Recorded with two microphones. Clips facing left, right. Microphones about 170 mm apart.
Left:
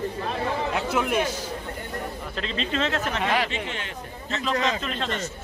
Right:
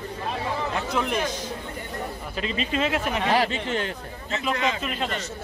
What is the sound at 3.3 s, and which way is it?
Speech, 40° right (ahead or behind).